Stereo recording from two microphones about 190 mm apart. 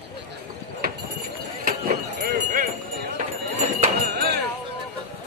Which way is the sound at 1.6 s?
50° right (ahead or behind).